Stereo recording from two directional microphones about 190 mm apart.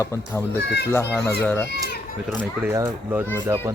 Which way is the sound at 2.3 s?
10° right (ahead or behind).